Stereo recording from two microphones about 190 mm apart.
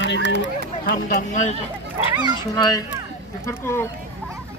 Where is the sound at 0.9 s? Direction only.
50° left (ahead or behind).